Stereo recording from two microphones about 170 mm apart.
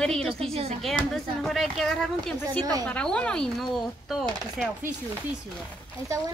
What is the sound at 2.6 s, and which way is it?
Speech, 20° right (ahead or behind).